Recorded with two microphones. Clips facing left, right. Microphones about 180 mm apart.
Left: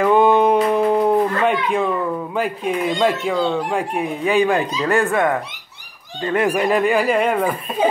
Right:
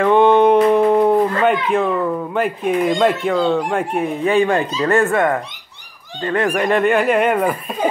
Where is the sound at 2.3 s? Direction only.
Centre (ahead or behind).